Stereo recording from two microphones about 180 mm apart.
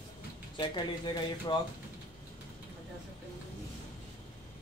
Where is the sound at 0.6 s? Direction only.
25° left (ahead or behind).